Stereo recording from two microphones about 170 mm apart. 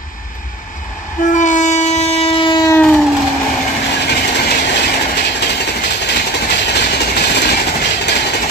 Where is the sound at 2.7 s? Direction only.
10° left (ahead or behind).